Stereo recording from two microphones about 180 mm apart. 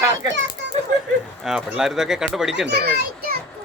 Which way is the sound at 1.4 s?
5° right (ahead or behind).